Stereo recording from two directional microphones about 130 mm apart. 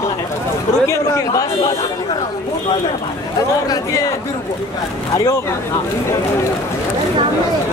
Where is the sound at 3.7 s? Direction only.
25° left (ahead or behind).